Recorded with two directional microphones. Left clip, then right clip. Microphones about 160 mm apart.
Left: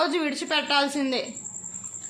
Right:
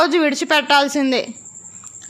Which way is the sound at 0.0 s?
50° right (ahead or behind).